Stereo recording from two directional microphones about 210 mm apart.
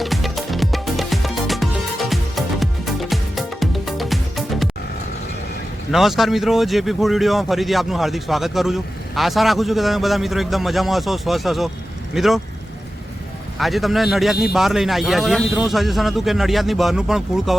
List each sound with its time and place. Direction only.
0.0 s music: centre (ahead or behind)
5.9 s speech: centre (ahead or behind)
13.6 s speech: centre (ahead or behind)